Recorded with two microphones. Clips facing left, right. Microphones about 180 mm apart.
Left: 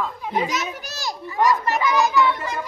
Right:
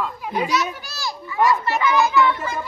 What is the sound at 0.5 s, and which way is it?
A child's voice, 40° left (ahead or behind).